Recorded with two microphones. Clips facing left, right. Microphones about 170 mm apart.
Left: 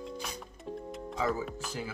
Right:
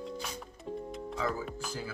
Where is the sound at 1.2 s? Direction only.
Centre (ahead or behind).